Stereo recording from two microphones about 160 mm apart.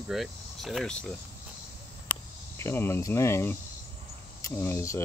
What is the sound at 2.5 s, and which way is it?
Speech, 15° left (ahead or behind).